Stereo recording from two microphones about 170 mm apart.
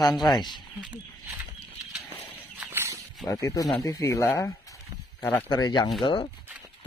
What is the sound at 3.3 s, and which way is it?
Speech, 20° left (ahead or behind).